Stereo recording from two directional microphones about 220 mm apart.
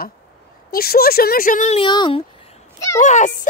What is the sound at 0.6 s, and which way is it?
A woman's voice, 45° left (ahead or behind).